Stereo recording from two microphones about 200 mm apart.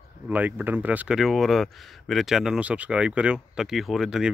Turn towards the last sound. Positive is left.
turn(degrees=0)  # may be behind; listen again after turning